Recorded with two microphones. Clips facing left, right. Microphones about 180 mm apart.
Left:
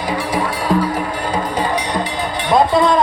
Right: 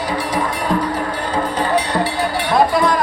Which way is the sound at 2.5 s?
20° left (ahead or behind).